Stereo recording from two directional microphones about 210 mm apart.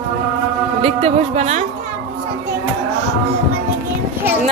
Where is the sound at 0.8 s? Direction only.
30° right (ahead or behind).